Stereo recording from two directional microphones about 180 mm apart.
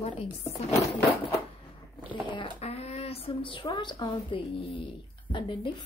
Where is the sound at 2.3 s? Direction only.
30° left (ahead or behind).